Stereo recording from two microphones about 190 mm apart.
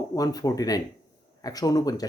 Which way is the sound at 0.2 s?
20° left (ahead or behind).